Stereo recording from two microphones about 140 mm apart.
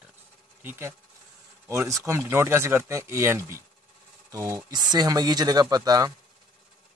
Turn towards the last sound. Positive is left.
turn(degrees=-25)  # may be behind; listen again after turning